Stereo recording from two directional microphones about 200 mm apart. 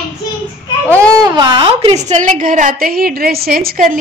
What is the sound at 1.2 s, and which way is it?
A woman's voice, 20° right (ahead or behind).